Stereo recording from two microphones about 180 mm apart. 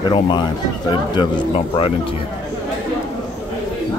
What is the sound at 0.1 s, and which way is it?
A man's voice, 25° left (ahead or behind).